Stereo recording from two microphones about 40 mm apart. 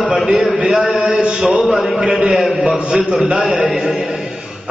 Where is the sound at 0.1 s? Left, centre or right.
Centre.